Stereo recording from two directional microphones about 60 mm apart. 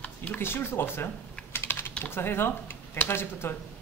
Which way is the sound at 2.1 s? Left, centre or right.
Left.